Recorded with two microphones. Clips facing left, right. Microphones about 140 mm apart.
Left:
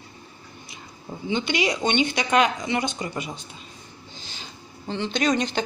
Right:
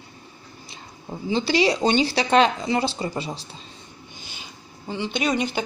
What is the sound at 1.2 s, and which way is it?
A woman's voice, 35° right (ahead or behind).